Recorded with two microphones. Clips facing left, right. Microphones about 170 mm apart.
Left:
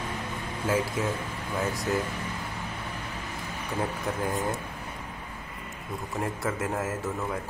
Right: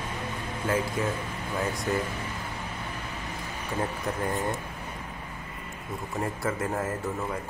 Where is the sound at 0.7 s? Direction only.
5° left (ahead or behind).